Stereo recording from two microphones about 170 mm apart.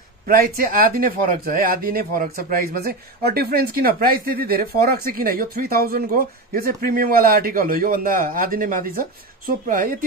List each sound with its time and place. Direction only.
0.3 s speech: 60° right (ahead or behind)